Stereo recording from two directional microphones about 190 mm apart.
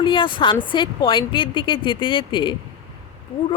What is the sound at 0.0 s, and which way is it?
A woman's voice, 25° left (ahead or behind).